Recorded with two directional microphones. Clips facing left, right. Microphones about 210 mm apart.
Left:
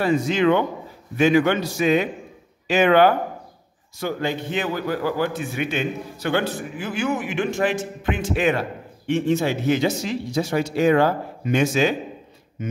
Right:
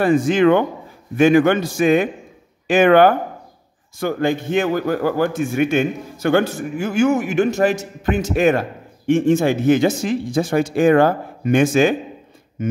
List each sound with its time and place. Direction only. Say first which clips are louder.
0.0 s a man's voice: right 5 dB; 50° right (ahead or behind)